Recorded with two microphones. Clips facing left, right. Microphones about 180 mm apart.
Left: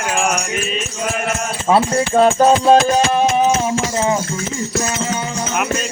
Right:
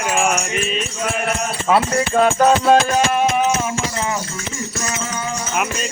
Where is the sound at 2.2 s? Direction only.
30° left (ahead or behind).